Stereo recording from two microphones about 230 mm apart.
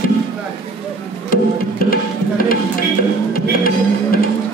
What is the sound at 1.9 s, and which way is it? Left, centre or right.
Music, left.